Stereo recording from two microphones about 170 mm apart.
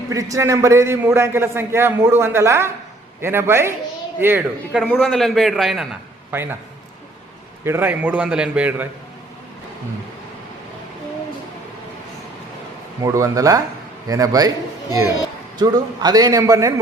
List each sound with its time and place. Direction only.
0.1 s a man's voice: 20° right (ahead or behind)
4.9 s a man's voice: 5° left (ahead or behind)
6.3 s a man's voice: 15° right (ahead or behind)
7.6 s a man's voice: 15° right (ahead or behind)
13.0 s a man's voice: 20° right (ahead or behind)
15.5 s a man's voice: 25° right (ahead or behind)